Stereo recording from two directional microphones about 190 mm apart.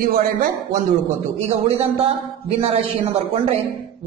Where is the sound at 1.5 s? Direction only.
30° right (ahead or behind).